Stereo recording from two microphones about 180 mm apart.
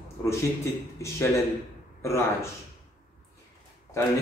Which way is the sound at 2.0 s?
15° left (ahead or behind).